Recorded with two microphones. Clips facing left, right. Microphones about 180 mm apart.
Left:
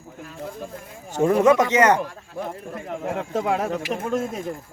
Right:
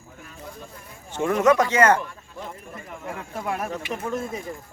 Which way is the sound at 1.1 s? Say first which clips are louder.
Left 3 dB; 35° left (ahead or behind).